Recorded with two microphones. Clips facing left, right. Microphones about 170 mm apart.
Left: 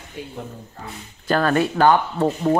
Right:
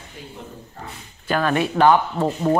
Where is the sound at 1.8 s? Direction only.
25° right (ahead or behind).